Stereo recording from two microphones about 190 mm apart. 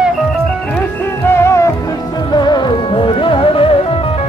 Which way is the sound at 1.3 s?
15° left (ahead or behind).